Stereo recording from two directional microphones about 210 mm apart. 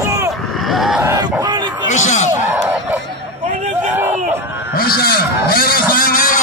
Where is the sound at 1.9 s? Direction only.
35° left (ahead or behind).